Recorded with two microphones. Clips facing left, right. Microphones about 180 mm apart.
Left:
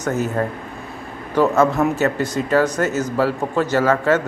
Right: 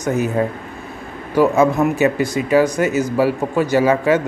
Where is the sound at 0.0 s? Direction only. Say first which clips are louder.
Right 3 dB; 15° right (ahead or behind).